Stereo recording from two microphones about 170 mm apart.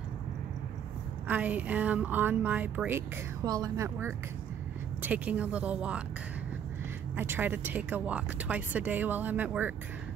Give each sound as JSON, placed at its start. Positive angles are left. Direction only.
{"t": 1.2, "sound": "speech", "side_deg": -10}
{"t": 3.4, "sound": "speech", "side_deg": -20}
{"t": 7.2, "sound": "speech", "side_deg": -10}